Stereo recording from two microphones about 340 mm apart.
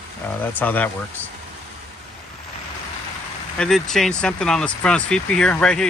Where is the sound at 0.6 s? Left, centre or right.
Centre.